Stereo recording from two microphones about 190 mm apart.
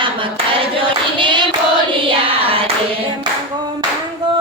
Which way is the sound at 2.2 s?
30° right (ahead or behind).